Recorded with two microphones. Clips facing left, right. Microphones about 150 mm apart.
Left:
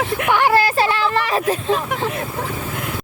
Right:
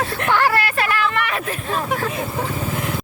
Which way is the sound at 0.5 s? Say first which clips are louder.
Left 4 dB; 30° left (ahead or behind).